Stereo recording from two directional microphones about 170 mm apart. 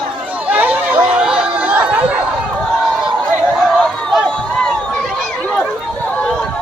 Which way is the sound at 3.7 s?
Centre (ahead or behind).